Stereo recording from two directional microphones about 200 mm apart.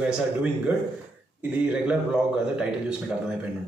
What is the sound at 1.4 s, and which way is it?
A man's voice, 5° right (ahead or behind).